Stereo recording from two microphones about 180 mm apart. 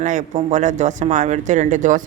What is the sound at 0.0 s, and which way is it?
A woman's voice, 40° right (ahead or behind).